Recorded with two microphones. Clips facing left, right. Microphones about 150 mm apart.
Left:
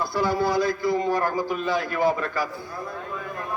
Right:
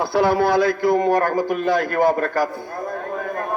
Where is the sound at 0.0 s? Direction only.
70° right (ahead or behind).